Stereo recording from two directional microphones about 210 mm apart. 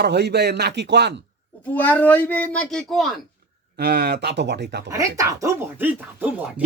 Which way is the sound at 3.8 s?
45° right (ahead or behind).